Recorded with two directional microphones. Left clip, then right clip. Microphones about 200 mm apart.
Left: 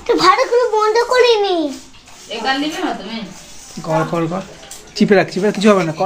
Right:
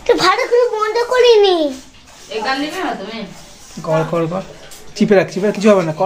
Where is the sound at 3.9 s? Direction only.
5° left (ahead or behind).